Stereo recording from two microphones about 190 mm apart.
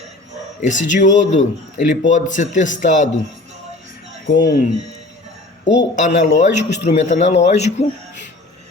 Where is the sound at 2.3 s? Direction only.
40° left (ahead or behind).